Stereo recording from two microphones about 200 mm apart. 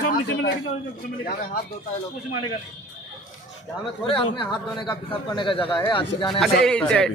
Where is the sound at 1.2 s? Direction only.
45° left (ahead or behind).